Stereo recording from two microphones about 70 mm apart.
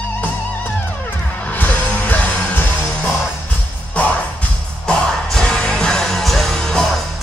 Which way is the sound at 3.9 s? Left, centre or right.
Centre.